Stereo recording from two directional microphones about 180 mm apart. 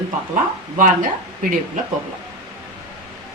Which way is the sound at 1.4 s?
45° right (ahead or behind).